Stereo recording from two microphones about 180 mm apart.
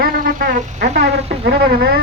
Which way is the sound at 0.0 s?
55° right (ahead or behind).